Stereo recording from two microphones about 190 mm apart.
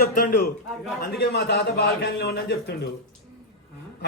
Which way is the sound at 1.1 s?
65° left (ahead or behind).